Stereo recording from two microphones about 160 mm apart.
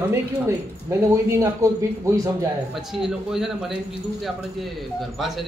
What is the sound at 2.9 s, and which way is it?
Speech, 5° right (ahead or behind).